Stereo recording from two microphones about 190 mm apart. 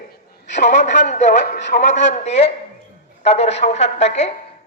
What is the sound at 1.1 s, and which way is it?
A man's voice, 40° left (ahead or behind).